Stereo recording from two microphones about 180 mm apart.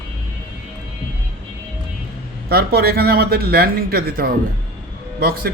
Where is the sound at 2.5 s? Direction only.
60° right (ahead or behind).